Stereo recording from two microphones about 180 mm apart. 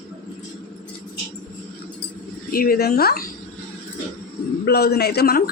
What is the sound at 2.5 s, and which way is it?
Speech, 55° left (ahead or behind).